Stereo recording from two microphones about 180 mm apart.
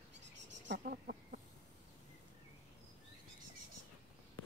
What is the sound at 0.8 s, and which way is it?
Speech, 50° right (ahead or behind).